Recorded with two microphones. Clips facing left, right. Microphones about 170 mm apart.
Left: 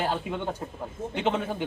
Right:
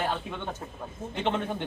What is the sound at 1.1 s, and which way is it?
Speech, 5° left (ahead or behind).